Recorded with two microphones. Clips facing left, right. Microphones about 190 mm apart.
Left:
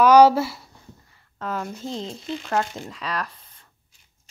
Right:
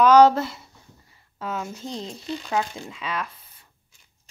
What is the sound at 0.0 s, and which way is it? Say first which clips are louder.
Speech: left 1 dB; 10° left (ahead or behind).